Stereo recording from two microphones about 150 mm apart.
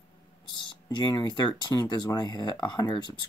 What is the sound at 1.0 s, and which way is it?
Speech, 25° left (ahead or behind).